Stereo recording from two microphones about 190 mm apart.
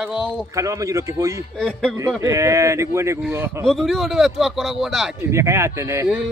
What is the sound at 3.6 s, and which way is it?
Speech, centre (ahead or behind).